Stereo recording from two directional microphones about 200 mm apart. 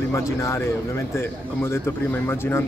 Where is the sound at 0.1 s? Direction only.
15° left (ahead or behind).